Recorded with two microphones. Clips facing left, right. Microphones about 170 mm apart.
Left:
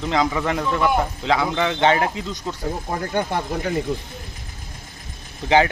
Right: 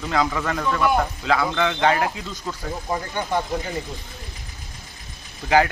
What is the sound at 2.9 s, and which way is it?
Speech, 60° left (ahead or behind).